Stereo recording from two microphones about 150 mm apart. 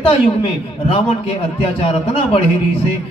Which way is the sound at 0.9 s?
40° left (ahead or behind).